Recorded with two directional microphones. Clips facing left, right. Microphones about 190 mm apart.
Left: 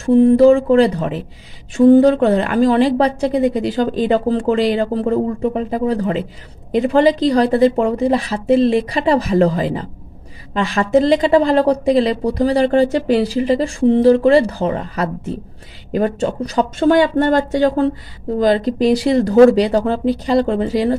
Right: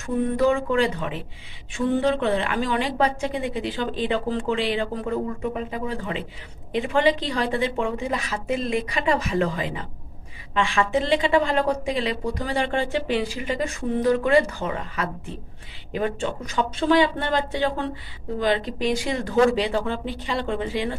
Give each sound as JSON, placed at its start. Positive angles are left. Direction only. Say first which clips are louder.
{"t": 0.0, "sound": "a woman's voice", "louder": "left 12 dB", "side_deg": 30}